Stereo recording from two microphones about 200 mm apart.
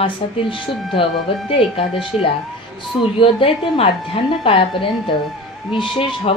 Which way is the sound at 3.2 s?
30° left (ahead or behind).